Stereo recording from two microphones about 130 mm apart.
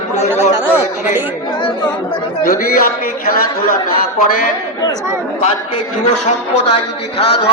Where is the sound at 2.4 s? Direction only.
90° left.